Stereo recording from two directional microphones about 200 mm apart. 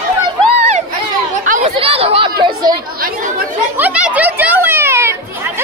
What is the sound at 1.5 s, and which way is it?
Chatter, 40° right (ahead or behind).